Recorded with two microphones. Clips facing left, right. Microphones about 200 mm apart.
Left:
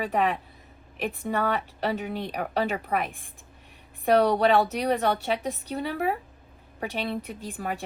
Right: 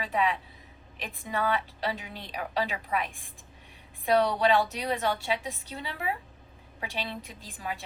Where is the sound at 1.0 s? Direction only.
60° left (ahead or behind).